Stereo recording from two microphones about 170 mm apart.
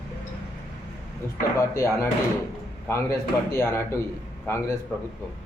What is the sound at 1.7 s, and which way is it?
A man's voice, 15° left (ahead or behind).